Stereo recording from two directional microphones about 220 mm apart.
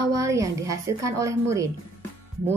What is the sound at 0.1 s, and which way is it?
A woman's voice, 15° right (ahead or behind).